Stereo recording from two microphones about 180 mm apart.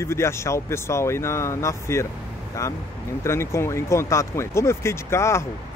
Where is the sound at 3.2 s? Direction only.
15° left (ahead or behind).